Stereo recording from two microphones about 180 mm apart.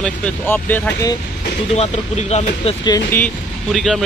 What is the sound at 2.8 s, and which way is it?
Speech, 20° left (ahead or behind).